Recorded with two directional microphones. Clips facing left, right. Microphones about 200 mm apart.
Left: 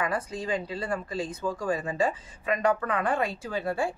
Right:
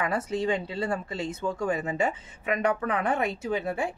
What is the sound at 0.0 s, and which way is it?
Speech, 25° right (ahead or behind).